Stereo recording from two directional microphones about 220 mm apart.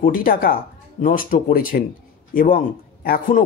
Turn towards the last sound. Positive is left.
turn(degrees=40)  # may be behind; listen again after turning